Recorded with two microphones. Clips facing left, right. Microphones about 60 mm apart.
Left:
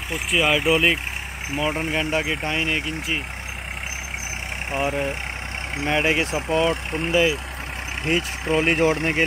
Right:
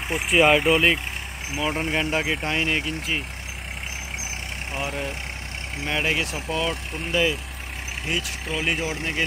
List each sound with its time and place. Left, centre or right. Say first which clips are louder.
0.1 s speech: right 3 dB; centre
4.8 s speech: left 6 dB; left
5.9 s speech: left 4 dB; centre
6.7 s speech: left 6 dB; left
7.1 s speech: left 3 dB; centre
8.1 s speech: left 7 dB; left